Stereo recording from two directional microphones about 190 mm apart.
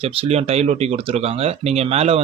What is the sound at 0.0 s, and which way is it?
Speech, 30° right (ahead or behind).